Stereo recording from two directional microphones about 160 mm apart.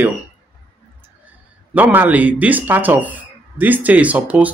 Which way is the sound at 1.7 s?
10° right (ahead or behind).